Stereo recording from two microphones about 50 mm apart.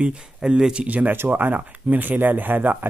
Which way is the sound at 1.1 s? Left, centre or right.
Right.